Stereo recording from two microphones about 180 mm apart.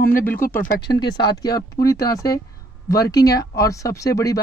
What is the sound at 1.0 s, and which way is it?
Speech, 25° left (ahead or behind).